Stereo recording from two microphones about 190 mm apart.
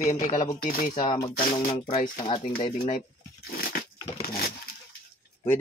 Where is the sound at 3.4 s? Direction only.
50° left (ahead or behind).